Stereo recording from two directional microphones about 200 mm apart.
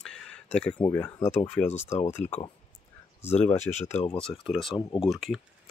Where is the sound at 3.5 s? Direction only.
35° left (ahead or behind).